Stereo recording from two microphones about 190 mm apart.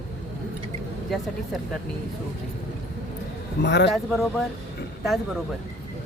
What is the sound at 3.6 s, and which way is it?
Speech, 65° left (ahead or behind).